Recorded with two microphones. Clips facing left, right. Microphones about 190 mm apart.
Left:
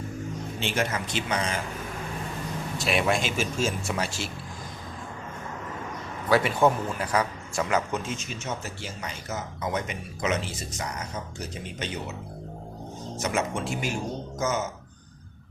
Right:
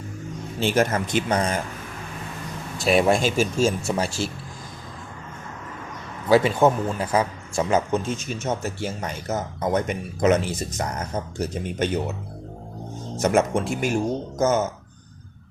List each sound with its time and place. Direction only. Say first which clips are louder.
0.6 s speech: right 8 dB; 45° right (ahead or behind)
2.8 s speech: right 7 dB; 35° right (ahead or behind)
6.2 s a man's voice: right 4 dB; 25° right (ahead or behind)
8.3 s speech: right 7 dB; 50° right (ahead or behind)
13.2 s speech: right 8 dB; 50° right (ahead or behind)